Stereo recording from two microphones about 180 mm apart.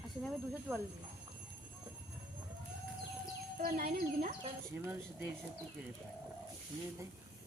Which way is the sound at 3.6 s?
55° right (ahead or behind).